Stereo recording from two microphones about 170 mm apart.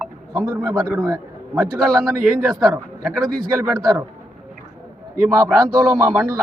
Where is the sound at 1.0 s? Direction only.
20° right (ahead or behind).